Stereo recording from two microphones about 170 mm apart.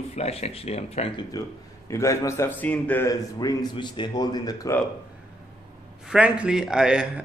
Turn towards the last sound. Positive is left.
turn(degrees=-5)  # may be behind; listen again after turning